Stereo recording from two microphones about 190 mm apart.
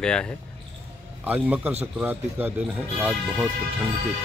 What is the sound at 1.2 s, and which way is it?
Speech, 10° right (ahead or behind).